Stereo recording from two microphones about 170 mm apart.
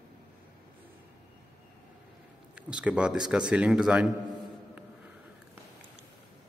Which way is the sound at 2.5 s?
5° right (ahead or behind).